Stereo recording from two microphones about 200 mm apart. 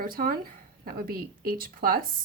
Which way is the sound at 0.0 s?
45° right (ahead or behind).